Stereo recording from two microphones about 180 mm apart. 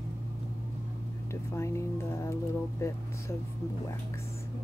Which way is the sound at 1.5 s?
15° left (ahead or behind).